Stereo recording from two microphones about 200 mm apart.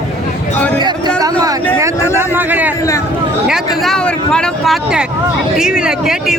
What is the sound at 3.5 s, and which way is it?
Speech, centre (ahead or behind).